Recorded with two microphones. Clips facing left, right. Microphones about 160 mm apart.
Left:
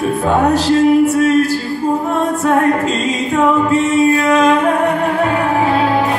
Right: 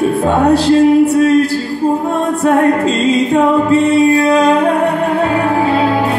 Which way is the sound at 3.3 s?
35° right (ahead or behind).